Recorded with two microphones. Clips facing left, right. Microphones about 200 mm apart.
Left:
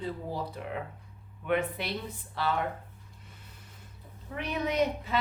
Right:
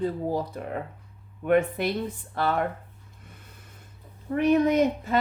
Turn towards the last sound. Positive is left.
turn(degrees=-50)  # may be behind; listen again after turning